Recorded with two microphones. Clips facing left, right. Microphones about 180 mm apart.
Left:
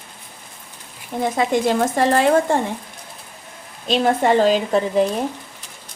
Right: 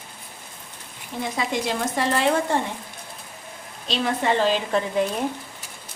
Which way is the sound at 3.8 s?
50° left (ahead or behind).